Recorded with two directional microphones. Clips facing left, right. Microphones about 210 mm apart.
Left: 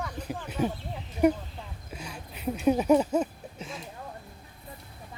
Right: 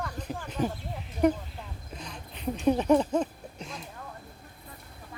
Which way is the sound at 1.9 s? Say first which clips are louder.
Left 1 dB; 10° left (ahead or behind).